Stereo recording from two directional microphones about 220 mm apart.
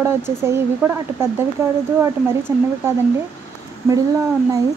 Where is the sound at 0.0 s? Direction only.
10° right (ahead or behind).